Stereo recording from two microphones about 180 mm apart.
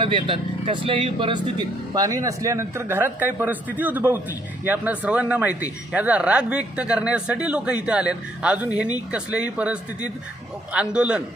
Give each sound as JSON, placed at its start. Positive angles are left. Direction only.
{"t": 0.0, "sound": "a man's voice", "side_deg": -30}